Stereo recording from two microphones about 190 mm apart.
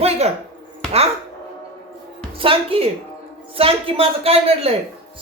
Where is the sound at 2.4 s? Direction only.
30° right (ahead or behind).